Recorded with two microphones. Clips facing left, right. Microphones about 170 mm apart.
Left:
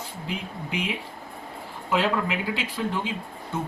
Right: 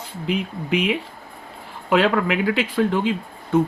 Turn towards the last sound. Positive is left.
turn(degrees=-60)  # may be behind; listen again after turning